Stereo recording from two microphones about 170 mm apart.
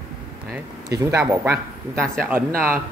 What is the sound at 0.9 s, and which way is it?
Speech, 20° right (ahead or behind).